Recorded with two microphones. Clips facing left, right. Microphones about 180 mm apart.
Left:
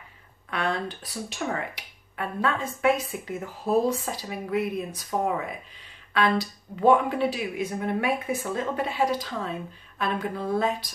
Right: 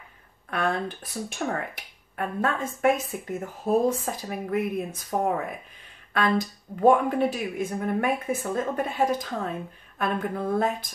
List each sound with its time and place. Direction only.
0.5 s speech: 50° right (ahead or behind)
6.8 s speech: 45° right (ahead or behind)